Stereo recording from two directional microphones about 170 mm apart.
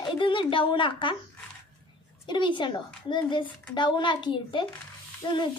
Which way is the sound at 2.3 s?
25° left (ahead or behind).